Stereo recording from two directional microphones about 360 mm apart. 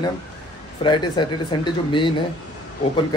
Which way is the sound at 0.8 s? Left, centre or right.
Centre.